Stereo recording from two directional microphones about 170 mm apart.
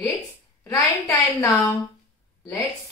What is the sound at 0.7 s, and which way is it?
A woman's voice, 20° left (ahead or behind).